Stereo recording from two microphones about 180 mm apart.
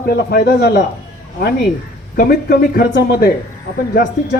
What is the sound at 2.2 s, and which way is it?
Speech, 60° left (ahead or behind).